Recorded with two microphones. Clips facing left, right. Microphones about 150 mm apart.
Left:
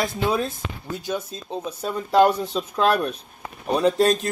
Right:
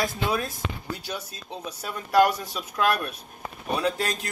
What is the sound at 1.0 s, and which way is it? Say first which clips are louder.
Speech: left 7 dB; 15° left (ahead or behind).